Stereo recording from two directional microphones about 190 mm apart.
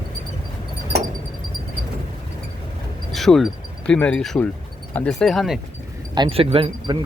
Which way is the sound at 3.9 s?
5° left (ahead or behind).